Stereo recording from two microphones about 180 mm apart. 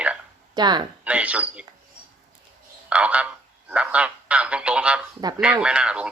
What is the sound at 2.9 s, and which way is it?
A man's voice, 5° right (ahead or behind).